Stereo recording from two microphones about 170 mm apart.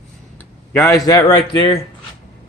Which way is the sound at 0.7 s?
15° left (ahead or behind).